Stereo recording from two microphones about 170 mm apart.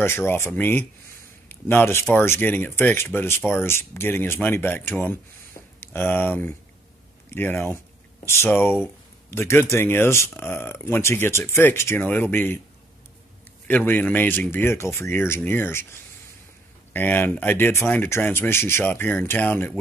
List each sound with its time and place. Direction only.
0.0 s speech: 15° left (ahead or behind)
13.7 s speech: 10° left (ahead or behind)
16.9 s speech: 10° left (ahead or behind)